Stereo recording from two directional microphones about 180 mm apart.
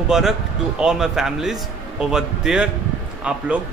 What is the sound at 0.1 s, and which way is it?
A man's voice, 5° right (ahead or behind).